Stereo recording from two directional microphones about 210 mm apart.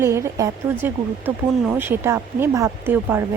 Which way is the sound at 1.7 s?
10° right (ahead or behind).